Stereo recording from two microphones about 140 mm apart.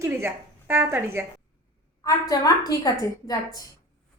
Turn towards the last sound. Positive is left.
turn(degrees=25)  # may be behind; listen again after turning